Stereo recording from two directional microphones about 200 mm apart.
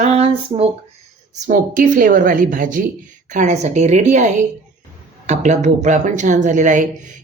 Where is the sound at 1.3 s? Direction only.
40° right (ahead or behind).